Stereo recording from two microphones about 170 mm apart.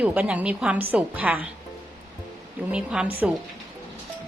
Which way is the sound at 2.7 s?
5° right (ahead or behind).